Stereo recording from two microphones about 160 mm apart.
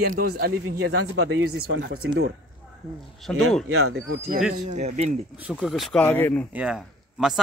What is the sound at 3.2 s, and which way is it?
Speech, centre (ahead or behind).